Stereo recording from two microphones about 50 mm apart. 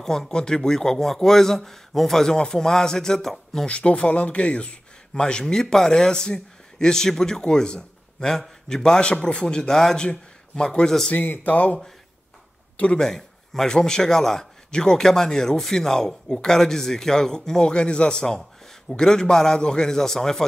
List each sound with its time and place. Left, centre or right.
0.0 s a man's voice: centre
3.6 s a man's voice: left
11.1 s speech: left
11.5 s a man's voice: left
13.0 s a man's voice: centre